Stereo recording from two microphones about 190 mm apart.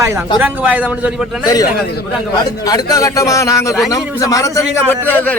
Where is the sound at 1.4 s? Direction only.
20° left (ahead or behind).